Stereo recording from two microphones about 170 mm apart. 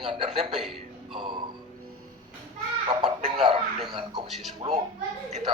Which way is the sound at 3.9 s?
25° right (ahead or behind).